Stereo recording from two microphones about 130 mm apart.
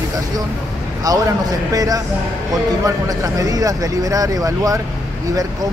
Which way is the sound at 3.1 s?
30° right (ahead or behind).